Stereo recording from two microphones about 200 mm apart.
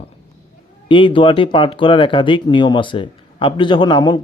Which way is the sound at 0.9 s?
25° left (ahead or behind).